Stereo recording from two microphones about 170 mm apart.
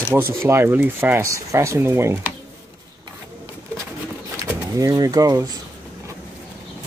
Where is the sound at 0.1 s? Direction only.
15° right (ahead or behind).